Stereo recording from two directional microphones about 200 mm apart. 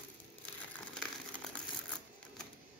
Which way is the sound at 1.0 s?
5° left (ahead or behind).